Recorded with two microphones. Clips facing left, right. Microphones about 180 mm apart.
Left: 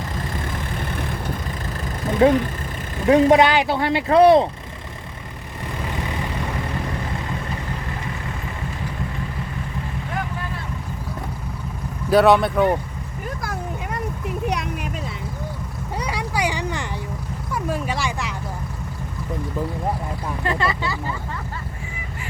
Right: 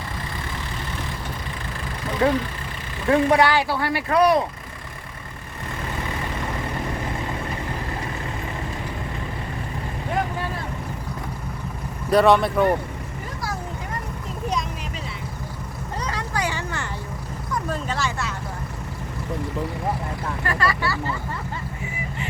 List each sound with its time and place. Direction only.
2.0 s vehicle: 40° left (ahead or behind)
3.1 s speech: 20° left (ahead or behind)
12.1 s speech: centre (ahead or behind)
13.9 s a sound: 65° left (ahead or behind)
16.0 s vehicle: 10° left (ahead or behind)
17.5 s a sound: 10° left (ahead or behind)
20.4 s speech: 20° left (ahead or behind)